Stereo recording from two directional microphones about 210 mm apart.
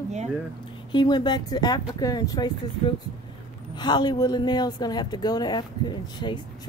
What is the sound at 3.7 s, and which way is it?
A woman's voice, 20° left (ahead or behind).